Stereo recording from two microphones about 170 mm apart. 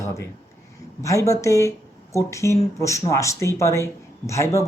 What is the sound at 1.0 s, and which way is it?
Speech, 20° left (ahead or behind).